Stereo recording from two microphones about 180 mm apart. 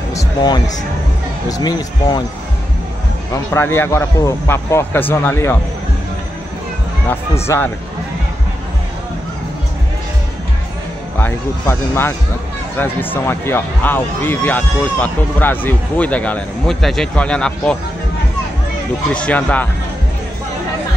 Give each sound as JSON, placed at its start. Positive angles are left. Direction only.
{"t": 0.1, "sound": "music", "side_deg": 20}
{"t": 1.5, "sound": "speech", "side_deg": 20}
{"t": 3.5, "sound": "speech", "side_deg": 10}
{"t": 7.1, "sound": "speech", "side_deg": 15}
{"t": 11.1, "sound": "speech", "side_deg": 10}
{"t": 19.1, "sound": "speech", "side_deg": 10}